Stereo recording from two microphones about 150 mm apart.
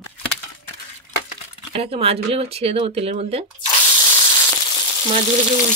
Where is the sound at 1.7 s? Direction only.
40° right (ahead or behind).